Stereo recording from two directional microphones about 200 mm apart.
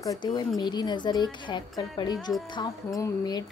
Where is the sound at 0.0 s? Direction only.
20° left (ahead or behind).